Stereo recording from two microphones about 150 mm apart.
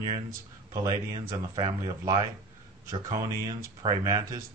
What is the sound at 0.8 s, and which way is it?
Speech, 25° right (ahead or behind).